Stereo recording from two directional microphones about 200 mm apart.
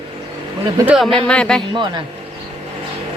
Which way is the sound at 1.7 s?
25° right (ahead or behind).